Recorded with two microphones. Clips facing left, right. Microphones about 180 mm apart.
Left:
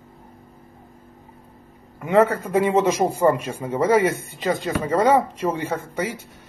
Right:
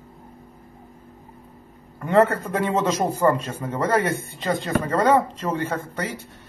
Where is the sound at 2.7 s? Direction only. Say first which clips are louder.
Left 1 dB; 15° left (ahead or behind).